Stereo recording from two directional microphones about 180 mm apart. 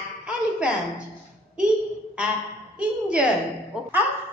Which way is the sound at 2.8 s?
5° right (ahead or behind).